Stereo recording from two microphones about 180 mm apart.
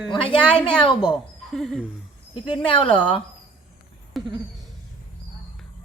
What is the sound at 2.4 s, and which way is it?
Speech, 30° left (ahead or behind).